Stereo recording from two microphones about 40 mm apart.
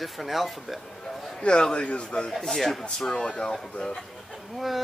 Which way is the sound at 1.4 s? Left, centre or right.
Left.